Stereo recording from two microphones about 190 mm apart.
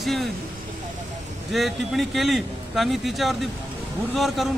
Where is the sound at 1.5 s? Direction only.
Centre (ahead or behind).